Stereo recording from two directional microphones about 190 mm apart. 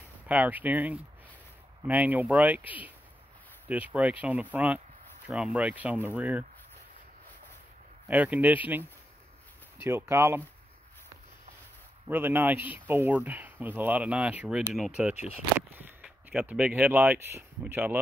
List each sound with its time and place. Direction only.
0.3 s speech: 10° right (ahead or behind)
8.1 s speech: 10° right (ahead or behind)
9.8 s speech: 10° right (ahead or behind)
12.1 s speech: 10° right (ahead or behind)